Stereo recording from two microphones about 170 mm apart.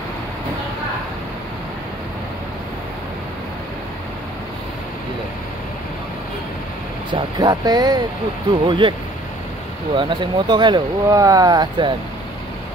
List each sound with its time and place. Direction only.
7.1 s speech: 25° right (ahead or behind)
9.9 s speech: 30° right (ahead or behind)